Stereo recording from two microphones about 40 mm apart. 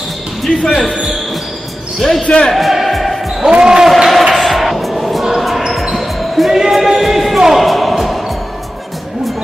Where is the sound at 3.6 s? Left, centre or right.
Centre.